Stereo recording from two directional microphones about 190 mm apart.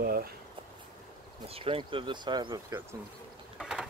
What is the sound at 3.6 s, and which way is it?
Mechanisms, centre (ahead or behind).